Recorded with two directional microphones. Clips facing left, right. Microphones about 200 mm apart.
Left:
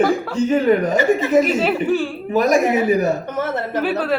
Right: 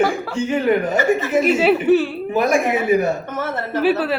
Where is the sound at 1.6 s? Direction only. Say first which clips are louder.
Right 4 dB; 5° right (ahead or behind).